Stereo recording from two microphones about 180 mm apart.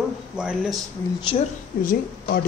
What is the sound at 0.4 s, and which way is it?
Speech, 5° right (ahead or behind).